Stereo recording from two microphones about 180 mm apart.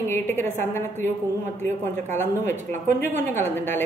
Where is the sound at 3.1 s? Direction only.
45° right (ahead or behind).